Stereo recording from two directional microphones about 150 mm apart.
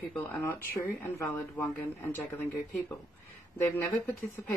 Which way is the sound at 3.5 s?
15° left (ahead or behind).